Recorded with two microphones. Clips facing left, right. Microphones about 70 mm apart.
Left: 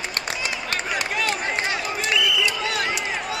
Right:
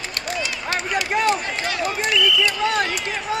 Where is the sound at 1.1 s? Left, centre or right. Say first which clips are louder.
Right 6 dB; right.